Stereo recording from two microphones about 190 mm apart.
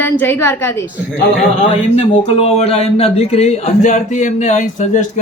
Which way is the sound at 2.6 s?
35° left (ahead or behind).